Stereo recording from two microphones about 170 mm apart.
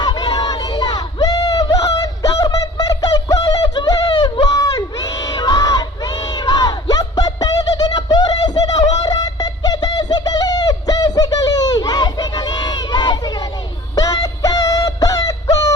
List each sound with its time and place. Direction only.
0.0 s a sound: 25° left (ahead or behind)
9.0 s bird: 20° left (ahead or behind)
13.9 s music: 20° left (ahead or behind)